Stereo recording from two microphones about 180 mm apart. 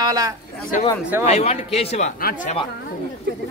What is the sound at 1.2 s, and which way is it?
Speech, 35° left (ahead or behind).